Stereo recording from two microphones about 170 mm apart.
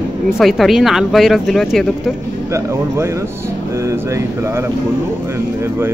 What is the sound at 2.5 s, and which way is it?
Speech, 15° right (ahead or behind).